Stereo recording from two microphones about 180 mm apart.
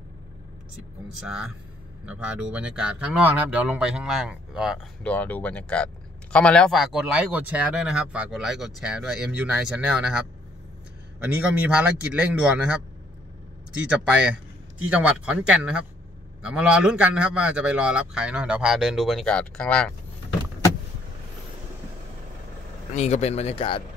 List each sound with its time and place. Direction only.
1.2 s speech: 5° right (ahead or behind)
5.0 s speech: 10° left (ahead or behind)
11.4 s speech: 5° right (ahead or behind)
13.8 s speech: 5° right (ahead or behind)
22.9 s speech: 35° left (ahead or behind)